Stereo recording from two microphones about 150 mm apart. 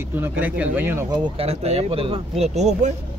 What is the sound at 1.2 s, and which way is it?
Speech, 40° right (ahead or behind).